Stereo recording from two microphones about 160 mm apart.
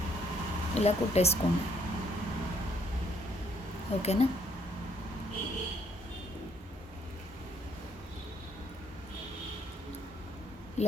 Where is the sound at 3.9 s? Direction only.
40° left (ahead or behind).